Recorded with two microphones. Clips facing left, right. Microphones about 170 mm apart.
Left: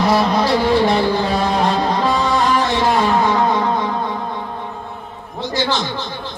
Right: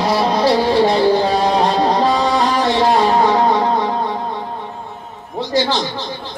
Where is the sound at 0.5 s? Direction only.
55° left (ahead or behind).